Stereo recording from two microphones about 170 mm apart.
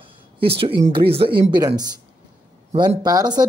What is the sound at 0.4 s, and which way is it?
Speech, 30° right (ahead or behind).